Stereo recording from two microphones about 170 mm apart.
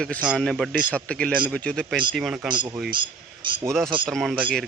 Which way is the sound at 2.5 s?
25° right (ahead or behind).